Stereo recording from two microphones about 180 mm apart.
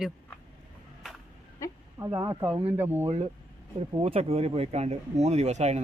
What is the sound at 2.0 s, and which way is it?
Speech, 20° right (ahead or behind).